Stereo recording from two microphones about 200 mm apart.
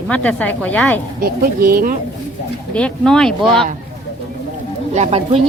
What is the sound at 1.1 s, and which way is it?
Speech, 45° right (ahead or behind).